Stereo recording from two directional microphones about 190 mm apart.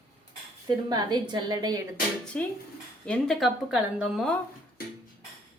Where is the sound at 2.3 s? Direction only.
5° left (ahead or behind).